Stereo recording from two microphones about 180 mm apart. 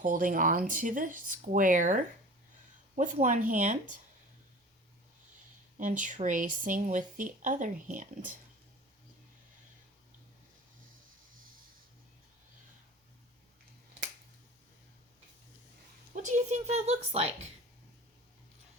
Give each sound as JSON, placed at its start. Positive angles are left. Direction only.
{"t": 0.0, "sound": "speech", "side_deg": -45}
{"t": 5.7, "sound": "speech", "side_deg": -45}
{"t": 16.1, "sound": "a woman's voice", "side_deg": -40}